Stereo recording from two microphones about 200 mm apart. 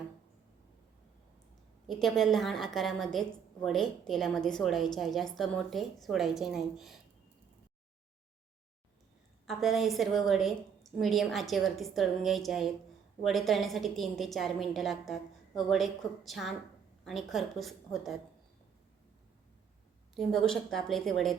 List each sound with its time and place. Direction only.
1.9 s a woman's voice: centre (ahead or behind)
9.5 s a woman's voice: centre (ahead or behind)
20.1 s a woman's voice: centre (ahead or behind)